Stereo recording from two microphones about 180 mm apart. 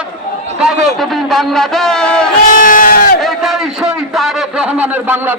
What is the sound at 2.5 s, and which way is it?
Crowd, 50° left (ahead or behind).